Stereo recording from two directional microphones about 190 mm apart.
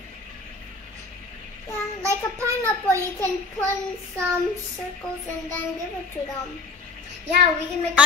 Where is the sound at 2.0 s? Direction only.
15° right (ahead or behind).